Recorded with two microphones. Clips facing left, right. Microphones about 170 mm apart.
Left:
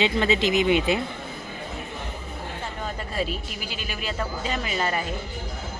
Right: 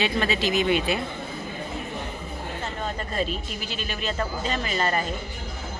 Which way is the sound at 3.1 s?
10° left (ahead or behind).